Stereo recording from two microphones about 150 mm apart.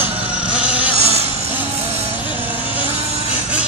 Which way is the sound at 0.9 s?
45° right (ahead or behind).